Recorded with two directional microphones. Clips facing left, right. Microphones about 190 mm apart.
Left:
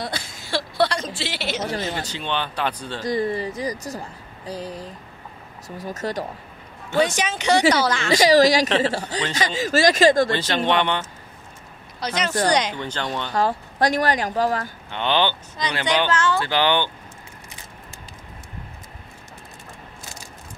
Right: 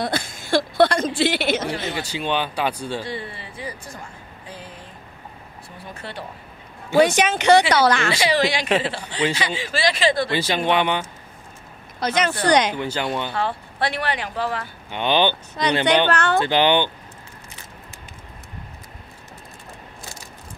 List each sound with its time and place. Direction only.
0.0 s a sound: 50° right (ahead or behind)
2.0 s speech: 10° right (ahead or behind)
3.0 s speech: 40° left (ahead or behind)
7.0 s speech: 60° right (ahead or behind)
8.1 s speech: 40° left (ahead or behind)
10.3 s speech: 10° right (ahead or behind)
12.0 s speech: 55° right (ahead or behind)
12.7 s speech: 10° right (ahead or behind)
13.3 s speech: 40° left (ahead or behind)
14.9 s speech: 15° right (ahead or behind)
15.6 s speech: 60° right (ahead or behind)
16.3 s speech: 20° right (ahead or behind)